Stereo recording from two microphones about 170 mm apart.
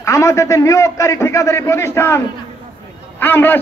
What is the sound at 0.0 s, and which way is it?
A man's voice, 20° left (ahead or behind).